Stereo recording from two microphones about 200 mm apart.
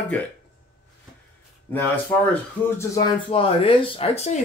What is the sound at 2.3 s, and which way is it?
Speech, 15° left (ahead or behind).